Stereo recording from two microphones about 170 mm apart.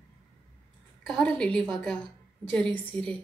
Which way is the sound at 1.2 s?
5° left (ahead or behind).